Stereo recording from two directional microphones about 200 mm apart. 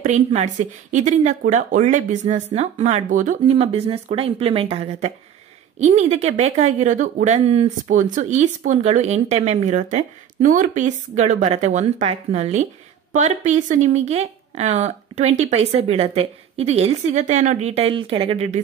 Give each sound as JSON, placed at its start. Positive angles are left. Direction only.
{"t": 0.0, "sound": "speech", "side_deg": -35}